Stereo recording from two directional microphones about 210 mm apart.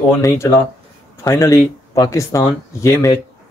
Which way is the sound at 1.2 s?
15° left (ahead or behind).